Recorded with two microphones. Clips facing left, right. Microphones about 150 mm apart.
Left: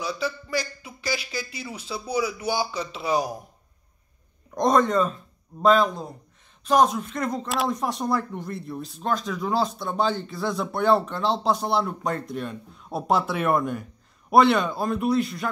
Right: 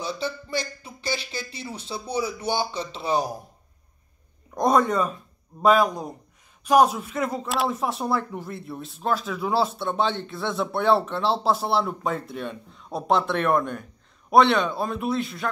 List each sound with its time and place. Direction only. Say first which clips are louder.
0.0 s speech: left 1 dB; 25° right (ahead or behind)
4.6 s speech: left 1 dB; 5° right (ahead or behind)